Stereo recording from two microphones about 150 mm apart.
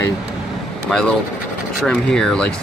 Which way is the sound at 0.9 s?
5° left (ahead or behind).